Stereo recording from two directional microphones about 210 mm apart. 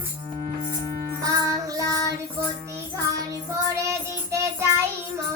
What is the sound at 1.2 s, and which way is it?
Music, 15° right (ahead or behind).